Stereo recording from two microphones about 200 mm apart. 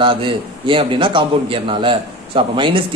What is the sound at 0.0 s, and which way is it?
A man's voice, 25° right (ahead or behind).